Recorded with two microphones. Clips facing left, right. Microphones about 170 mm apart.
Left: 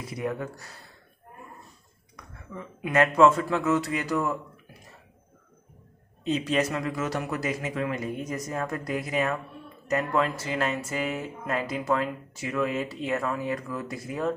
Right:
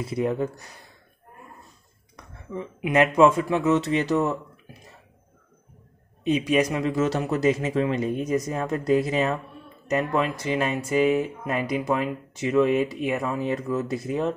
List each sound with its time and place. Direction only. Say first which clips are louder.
0.0 s speech: right 6 dB; 25° right (ahead or behind)
2.1 s speech: right 7 dB; 20° right (ahead or behind)
6.2 s speech: right 4 dB; 15° right (ahead or behind)